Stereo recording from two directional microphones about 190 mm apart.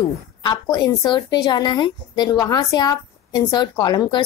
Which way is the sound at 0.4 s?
20° left (ahead or behind).